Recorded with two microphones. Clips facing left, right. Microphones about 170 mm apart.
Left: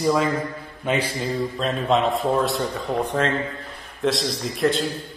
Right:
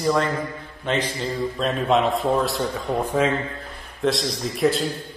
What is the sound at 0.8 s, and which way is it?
Mantra, 10° left (ahead or behind).